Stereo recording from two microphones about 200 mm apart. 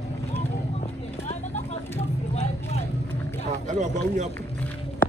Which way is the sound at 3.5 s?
35° right (ahead or behind).